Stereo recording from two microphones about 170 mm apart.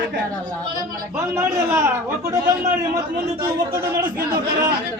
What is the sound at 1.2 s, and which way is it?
A man's voice, 15° right (ahead or behind).